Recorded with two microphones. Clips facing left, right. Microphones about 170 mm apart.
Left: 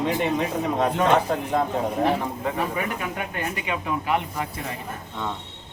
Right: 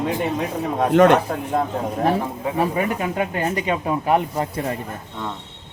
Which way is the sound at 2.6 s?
35° right (ahead or behind).